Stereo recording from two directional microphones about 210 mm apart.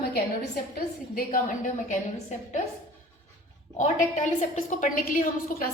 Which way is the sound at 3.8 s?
35° left (ahead or behind).